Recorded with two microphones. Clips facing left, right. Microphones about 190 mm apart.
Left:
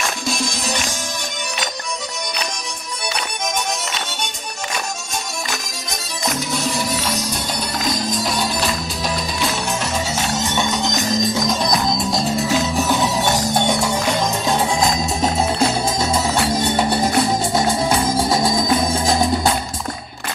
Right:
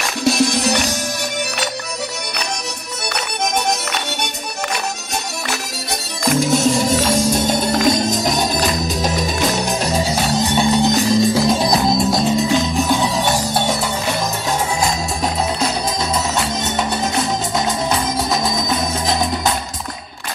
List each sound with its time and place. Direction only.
0.2 s music: 65° right (ahead or behind)
3.5 s music: 65° right (ahead or behind)
6.2 s music: 50° right (ahead or behind)
7.9 s music: 25° right (ahead or behind)
8.5 s music: 45° right (ahead or behind)
11.9 s music: centre (ahead or behind)
12.4 s music: 15° right (ahead or behind)
17.0 s music: 10° left (ahead or behind)
18.1 s music: 30° left (ahead or behind)